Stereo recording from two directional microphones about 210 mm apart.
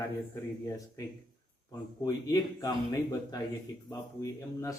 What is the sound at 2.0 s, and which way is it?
A man's voice, 15° left (ahead or behind).